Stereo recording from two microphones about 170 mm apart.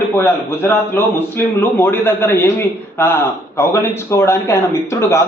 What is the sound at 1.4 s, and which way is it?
A man's voice, 10° left (ahead or behind).